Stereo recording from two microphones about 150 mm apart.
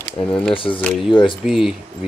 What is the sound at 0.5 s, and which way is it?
Speech, 35° left (ahead or behind).